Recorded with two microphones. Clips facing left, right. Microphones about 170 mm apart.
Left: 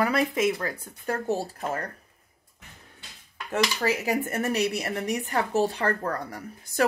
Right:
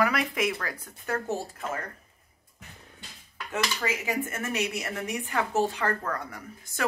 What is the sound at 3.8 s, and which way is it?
A woman's voice, 35° left (ahead or behind).